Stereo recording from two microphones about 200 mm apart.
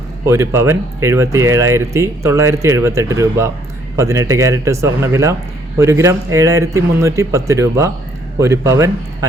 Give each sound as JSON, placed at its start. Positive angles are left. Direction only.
{"t": 0.3, "sound": "speech", "side_deg": -15}